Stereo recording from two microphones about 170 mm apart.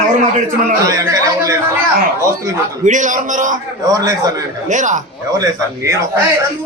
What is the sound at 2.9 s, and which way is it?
Speech, 50° right (ahead or behind).